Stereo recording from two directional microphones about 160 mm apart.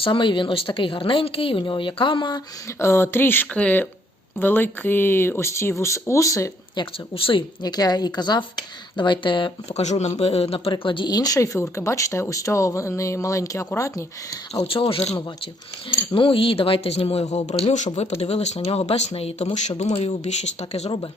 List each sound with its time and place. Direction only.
0.0 s speech: 30° left (ahead or behind)
7.1 s speech: 30° left (ahead or behind)
14.6 s speech: 35° left (ahead or behind)